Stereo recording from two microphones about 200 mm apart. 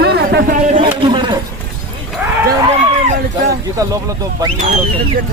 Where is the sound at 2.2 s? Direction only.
15° right (ahead or behind).